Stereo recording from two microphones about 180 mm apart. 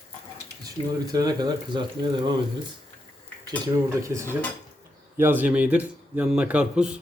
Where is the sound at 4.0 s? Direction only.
15° right (ahead or behind).